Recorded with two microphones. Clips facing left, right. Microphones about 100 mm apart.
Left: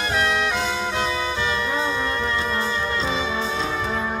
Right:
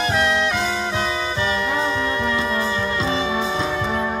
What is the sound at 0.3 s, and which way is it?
Music, centre (ahead or behind).